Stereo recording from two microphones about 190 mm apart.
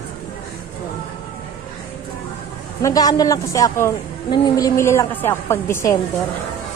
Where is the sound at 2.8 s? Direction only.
15° left (ahead or behind).